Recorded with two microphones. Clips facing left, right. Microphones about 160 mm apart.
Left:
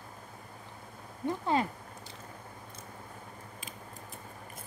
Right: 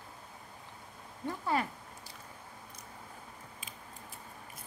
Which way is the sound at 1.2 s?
20° left (ahead or behind).